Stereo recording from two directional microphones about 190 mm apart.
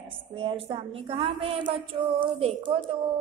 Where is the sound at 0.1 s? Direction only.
30° right (ahead or behind).